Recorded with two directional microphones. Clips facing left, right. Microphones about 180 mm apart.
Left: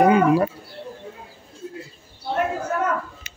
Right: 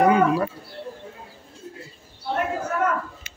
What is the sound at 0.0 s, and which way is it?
Speech, 20° left (ahead or behind).